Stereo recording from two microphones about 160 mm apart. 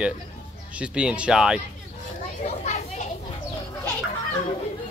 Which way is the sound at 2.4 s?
45° left (ahead or behind).